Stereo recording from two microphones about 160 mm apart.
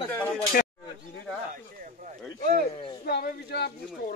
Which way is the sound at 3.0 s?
85° left.